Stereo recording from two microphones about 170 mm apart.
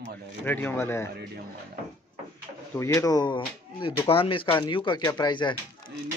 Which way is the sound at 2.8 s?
20° left (ahead or behind).